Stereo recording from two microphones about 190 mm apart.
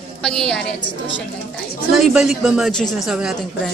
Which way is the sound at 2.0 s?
5° right (ahead or behind).